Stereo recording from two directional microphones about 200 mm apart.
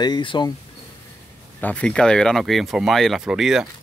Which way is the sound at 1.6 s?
5° left (ahead or behind).